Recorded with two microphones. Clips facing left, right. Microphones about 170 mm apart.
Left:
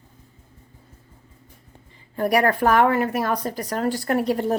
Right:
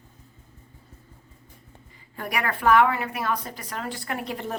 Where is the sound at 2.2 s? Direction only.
35° left (ahead or behind).